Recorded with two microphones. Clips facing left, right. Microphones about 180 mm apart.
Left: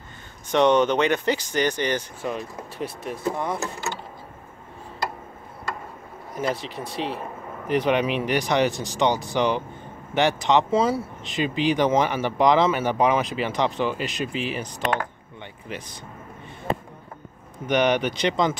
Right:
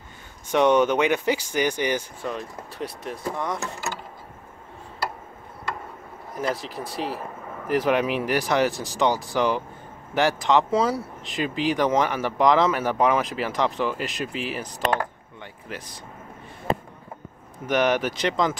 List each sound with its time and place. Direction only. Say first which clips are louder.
0.5 s speech: even; 10° right (ahead or behind)
2.2 s speech: left 2 dB; 5° left (ahead or behind)
6.3 s speech: left 1 dB; centre (ahead or behind)
17.6 s speech: left 1 dB; centre (ahead or behind)